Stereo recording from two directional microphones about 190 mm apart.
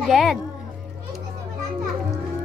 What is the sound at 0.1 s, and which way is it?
Speech, centre (ahead or behind).